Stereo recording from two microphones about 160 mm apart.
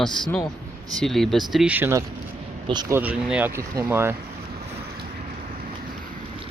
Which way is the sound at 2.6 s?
25° right (ahead or behind).